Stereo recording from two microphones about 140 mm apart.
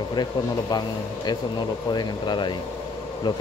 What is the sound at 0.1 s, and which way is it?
A man's voice, 30° left (ahead or behind).